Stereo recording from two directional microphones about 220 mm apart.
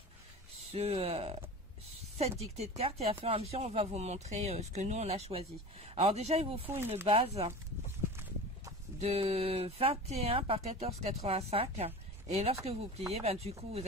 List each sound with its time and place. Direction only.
0.7 s speech: 30° right (ahead or behind)
9.0 s speech: 25° right (ahead or behind)